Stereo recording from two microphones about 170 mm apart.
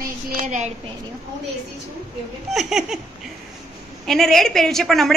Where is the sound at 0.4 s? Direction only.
45° right (ahead or behind).